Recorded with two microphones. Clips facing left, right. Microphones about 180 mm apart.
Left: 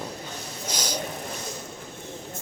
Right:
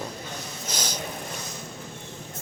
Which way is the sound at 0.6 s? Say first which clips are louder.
Left 3 dB; 10° left (ahead or behind).